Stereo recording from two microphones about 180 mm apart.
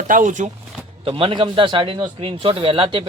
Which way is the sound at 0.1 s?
45° right (ahead or behind).